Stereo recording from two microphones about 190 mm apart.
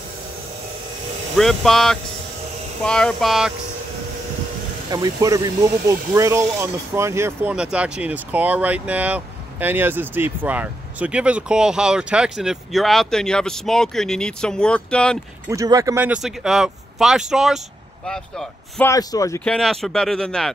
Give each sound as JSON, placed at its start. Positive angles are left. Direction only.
{"t": 1.3, "sound": "speech", "side_deg": 0}
{"t": 4.9, "sound": "speech", "side_deg": -20}
{"t": 15.4, "sound": "speech", "side_deg": -15}
{"t": 18.9, "sound": "speech", "side_deg": 15}
{"t": 19.4, "sound": "speech", "side_deg": 5}